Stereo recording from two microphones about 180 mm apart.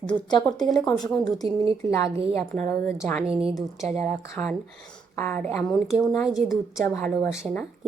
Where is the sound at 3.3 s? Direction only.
30° right (ahead or behind).